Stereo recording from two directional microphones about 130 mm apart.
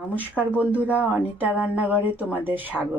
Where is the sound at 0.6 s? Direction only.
10° right (ahead or behind).